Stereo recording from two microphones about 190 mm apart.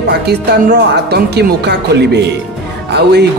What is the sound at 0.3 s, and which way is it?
Speech, 60° right (ahead or behind).